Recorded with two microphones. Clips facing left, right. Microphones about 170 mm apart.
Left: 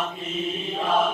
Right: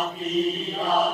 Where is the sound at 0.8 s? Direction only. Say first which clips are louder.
Even; 40° right (ahead or behind).